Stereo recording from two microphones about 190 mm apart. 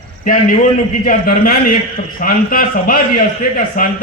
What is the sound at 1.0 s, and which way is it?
A man's voice, 50° left (ahead or behind).